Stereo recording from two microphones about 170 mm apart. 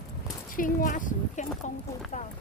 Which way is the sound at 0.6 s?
50° left (ahead or behind).